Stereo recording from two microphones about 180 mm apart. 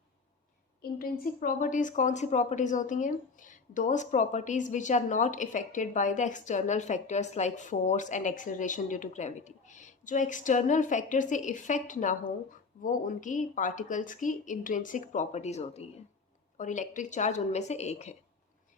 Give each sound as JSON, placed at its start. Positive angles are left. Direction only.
{"t": 0.8, "sound": "a woman's voice", "side_deg": 55}